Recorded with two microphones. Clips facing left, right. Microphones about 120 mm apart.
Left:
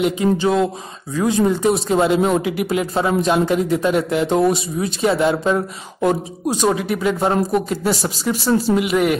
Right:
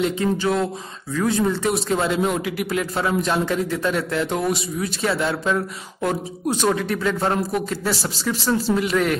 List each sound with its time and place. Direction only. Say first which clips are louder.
0.0 s speech: left 4 dB; 20° left (ahead or behind)
6.6 s speech: left 3 dB; 10° left (ahead or behind)